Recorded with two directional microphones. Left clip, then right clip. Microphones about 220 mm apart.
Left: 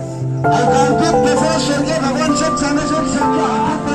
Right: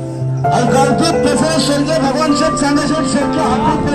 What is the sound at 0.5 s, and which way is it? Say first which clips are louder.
Music: even; 30° right (ahead or behind).